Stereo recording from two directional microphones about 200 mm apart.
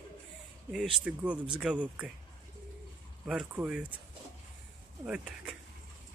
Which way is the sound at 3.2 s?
5° right (ahead or behind).